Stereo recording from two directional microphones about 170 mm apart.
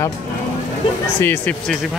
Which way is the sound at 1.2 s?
10° left (ahead or behind).